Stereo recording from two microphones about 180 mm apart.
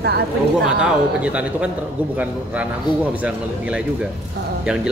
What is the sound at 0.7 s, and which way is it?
A man's voice, 5° right (ahead or behind).